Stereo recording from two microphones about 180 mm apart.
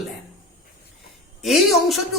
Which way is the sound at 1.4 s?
Centre (ahead or behind).